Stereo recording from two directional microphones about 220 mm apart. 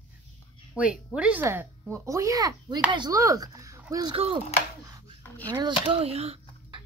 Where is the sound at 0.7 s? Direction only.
5° right (ahead or behind); by 4.4 s 25° right (ahead or behind).